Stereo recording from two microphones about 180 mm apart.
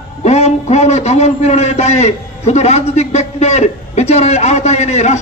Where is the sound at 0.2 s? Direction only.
40° left (ahead or behind).